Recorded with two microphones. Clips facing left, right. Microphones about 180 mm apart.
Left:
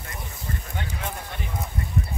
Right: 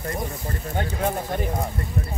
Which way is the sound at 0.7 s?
45° right (ahead or behind).